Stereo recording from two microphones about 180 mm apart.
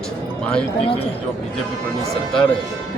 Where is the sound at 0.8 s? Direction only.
30° left (ahead or behind).